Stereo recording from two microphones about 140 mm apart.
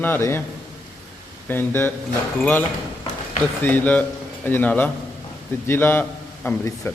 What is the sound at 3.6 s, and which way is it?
A man's voice, 15° left (ahead or behind).